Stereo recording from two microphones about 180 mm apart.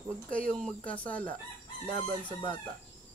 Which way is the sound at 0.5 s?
5° left (ahead or behind).